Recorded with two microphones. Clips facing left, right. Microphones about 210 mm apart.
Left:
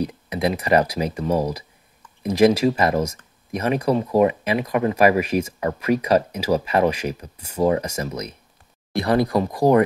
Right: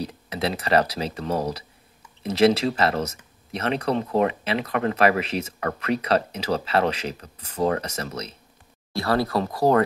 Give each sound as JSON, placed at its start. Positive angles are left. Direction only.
{"t": 0.0, "sound": "speech", "side_deg": 15}